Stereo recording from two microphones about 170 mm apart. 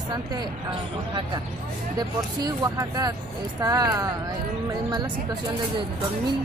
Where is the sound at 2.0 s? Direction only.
25° right (ahead or behind).